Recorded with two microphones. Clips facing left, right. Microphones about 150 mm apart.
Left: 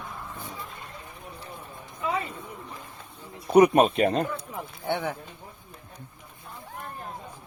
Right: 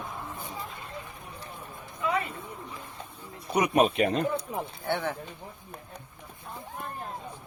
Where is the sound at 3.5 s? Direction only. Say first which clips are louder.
Left 6 dB; 50° left (ahead or behind).